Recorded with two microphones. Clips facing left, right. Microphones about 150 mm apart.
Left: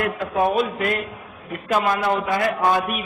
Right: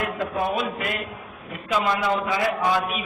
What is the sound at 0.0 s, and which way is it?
Speech, 60° left (ahead or behind).